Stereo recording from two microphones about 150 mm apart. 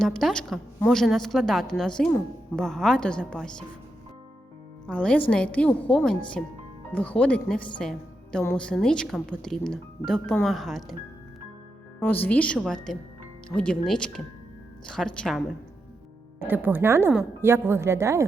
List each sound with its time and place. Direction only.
0.0 s a woman's voice: 5° left (ahead or behind)
4.9 s a woman's voice: 10° left (ahead or behind)
11.9 s a woman's voice: 10° left (ahead or behind)
16.4 s speech: 10° right (ahead or behind)